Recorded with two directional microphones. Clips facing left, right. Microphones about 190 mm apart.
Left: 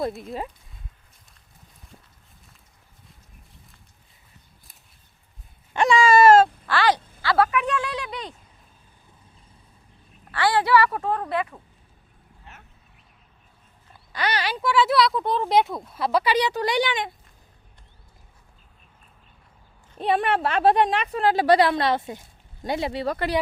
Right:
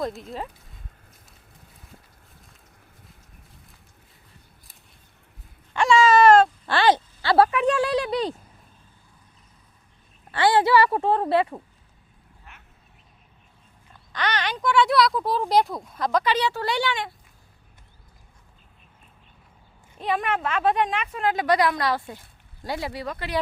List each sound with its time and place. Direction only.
0.0 s speech: 5° left (ahead or behind)
5.7 s a sound: 15° left (ahead or behind)
6.7 s a sound: 25° right (ahead or behind)
10.3 s a woman's voice: 25° right (ahead or behind)
12.5 s duck: 30° left (ahead or behind)
14.1 s speech: 10° left (ahead or behind)
20.0 s a woman's voice: 30° left (ahead or behind)